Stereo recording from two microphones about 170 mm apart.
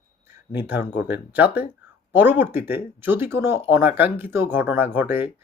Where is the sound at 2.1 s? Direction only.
10° right (ahead or behind).